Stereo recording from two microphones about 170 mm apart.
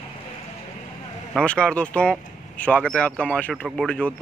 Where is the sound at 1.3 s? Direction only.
5° left (ahead or behind).